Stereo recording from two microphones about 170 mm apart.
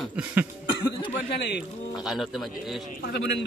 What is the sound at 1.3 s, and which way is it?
Speech, 75° left (ahead or behind).